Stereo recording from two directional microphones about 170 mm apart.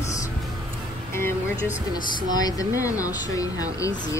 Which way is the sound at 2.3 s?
20° left (ahead or behind).